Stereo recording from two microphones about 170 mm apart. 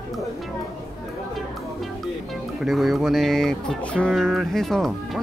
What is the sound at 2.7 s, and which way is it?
Speech, centre (ahead or behind).